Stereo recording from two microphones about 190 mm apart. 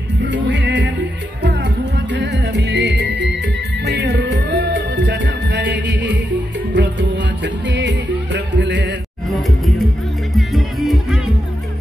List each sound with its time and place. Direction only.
0.2 s music: 70° right (ahead or behind)
2.1 s music: 65° right (ahead or behind)
10.3 s music: centre (ahead or behind)